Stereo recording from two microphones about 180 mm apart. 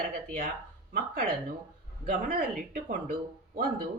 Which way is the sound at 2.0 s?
50° right (ahead or behind).